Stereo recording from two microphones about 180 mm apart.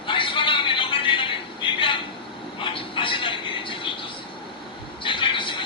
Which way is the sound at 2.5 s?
30° left (ahead or behind).